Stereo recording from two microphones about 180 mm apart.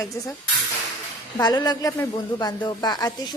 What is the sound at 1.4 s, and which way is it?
A woman's voice, 20° left (ahead or behind).